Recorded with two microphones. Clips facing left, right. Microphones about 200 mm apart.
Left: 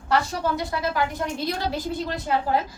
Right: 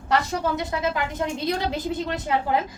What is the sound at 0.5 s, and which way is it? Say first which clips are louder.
A woman's voice: even; 20° right (ahead or behind).